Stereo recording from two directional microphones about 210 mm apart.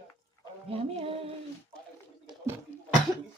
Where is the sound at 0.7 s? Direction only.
25° right (ahead or behind).